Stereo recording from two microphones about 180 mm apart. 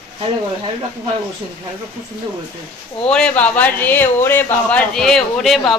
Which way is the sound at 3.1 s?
5° left (ahead or behind).